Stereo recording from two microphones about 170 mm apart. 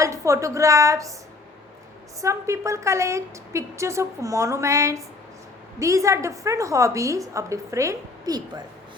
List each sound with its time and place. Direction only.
0.0 s a woman's voice: 20° right (ahead or behind)
2.2 s a woman's voice: 20° right (ahead or behind)